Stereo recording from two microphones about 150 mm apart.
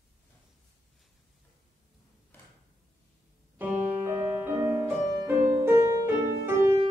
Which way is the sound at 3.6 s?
15° right (ahead or behind).